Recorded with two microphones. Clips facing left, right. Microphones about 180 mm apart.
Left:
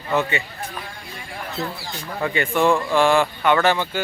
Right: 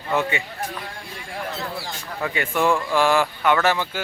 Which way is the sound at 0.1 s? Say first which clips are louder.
Left 1 dB; 10° right (ahead or behind).